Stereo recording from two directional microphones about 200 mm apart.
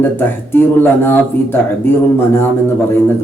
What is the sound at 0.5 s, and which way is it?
Speech, 10° left (ahead or behind).